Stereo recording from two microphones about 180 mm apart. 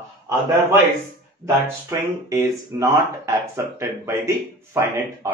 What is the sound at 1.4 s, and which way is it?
Speech, 15° right (ahead or behind).